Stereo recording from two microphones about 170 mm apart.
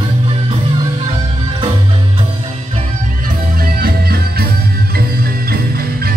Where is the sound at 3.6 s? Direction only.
65° right (ahead or behind).